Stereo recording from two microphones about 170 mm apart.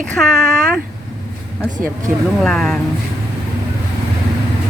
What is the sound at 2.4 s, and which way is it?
Speech, 5° left (ahead or behind).